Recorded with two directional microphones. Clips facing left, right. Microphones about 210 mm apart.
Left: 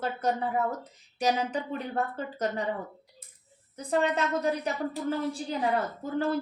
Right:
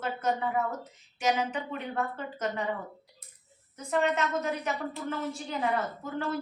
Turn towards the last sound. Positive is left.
turn(degrees=35)  # may be behind; listen again after turning